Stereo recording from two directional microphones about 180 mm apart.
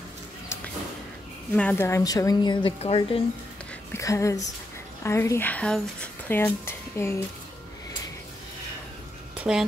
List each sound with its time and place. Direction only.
1.5 s a woman's voice: 10° left (ahead or behind); by 3.2 s 30° left (ahead or behind)
3.9 s speech: 15° left (ahead or behind)
9.4 s speech: 5° right (ahead or behind)